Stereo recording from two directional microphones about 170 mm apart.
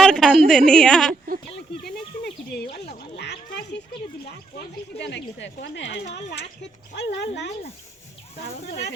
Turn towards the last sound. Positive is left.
turn(degrees=80)